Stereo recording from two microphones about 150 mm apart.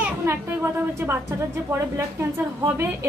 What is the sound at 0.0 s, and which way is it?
A woman's voice, 15° right (ahead or behind).